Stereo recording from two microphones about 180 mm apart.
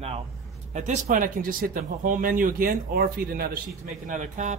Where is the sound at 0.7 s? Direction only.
45° right (ahead or behind).